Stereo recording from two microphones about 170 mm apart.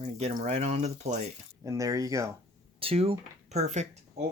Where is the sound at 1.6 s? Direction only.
20° right (ahead or behind).